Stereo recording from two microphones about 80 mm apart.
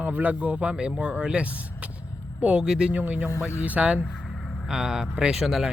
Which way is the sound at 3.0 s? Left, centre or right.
Right.